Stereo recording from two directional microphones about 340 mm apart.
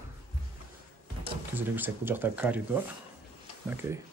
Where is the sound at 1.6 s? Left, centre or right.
Centre.